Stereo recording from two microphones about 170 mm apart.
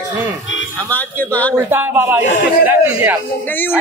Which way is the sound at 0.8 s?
10° left (ahead or behind).